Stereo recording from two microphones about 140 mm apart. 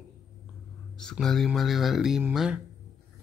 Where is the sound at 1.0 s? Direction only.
5° left (ahead or behind).